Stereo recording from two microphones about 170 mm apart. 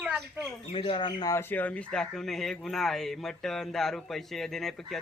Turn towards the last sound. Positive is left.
turn(degrees=0)  # may be behind; listen again after turning